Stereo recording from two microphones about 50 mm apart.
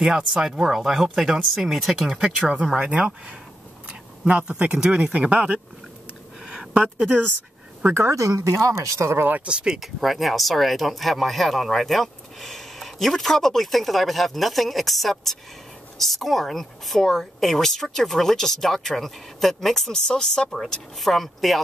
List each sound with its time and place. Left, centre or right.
0.0 s speech: centre
2.7 s speech: right
6.4 s a sound: centre
7.9 s speech: right
9.5 s speech: centre
9.8 s speech: centre
21.0 s speech: centre